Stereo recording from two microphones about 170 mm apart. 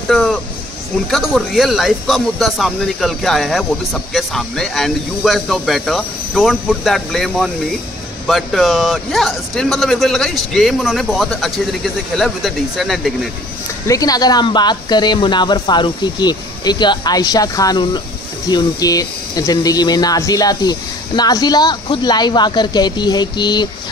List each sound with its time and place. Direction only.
0.1 s speech: centre (ahead or behind)
13.8 s speech: 20° left (ahead or behind)